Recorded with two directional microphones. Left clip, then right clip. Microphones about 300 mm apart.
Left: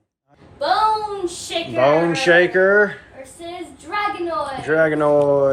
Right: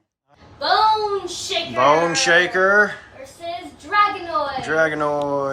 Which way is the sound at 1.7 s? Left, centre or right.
Centre.